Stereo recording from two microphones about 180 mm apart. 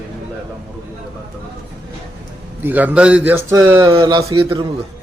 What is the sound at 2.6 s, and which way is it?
Speech, 10° right (ahead or behind).